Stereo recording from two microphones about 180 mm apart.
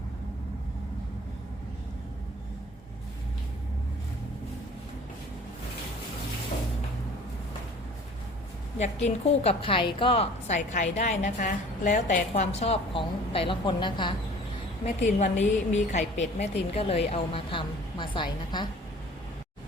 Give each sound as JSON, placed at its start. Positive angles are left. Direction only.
{"t": 9.0, "sound": "a woman's voice", "side_deg": 35}
{"t": 10.5, "sound": "a woman's voice", "side_deg": 40}
{"t": 14.8, "sound": "a woman's voice", "side_deg": 40}